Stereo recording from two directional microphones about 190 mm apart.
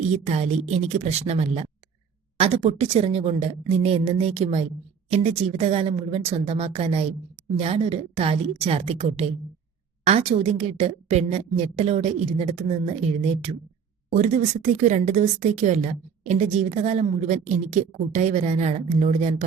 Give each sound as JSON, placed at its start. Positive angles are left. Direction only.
{"t": 0.0, "sound": "speech", "side_deg": -35}